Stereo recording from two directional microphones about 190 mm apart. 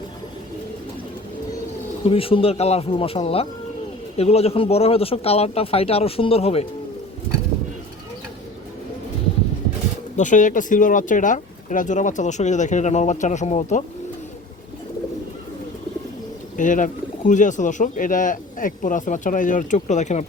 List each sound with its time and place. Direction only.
2.0 s speech: 30° left (ahead or behind)
10.2 s speech: 40° left (ahead or behind)
16.6 s speech: 45° left (ahead or behind)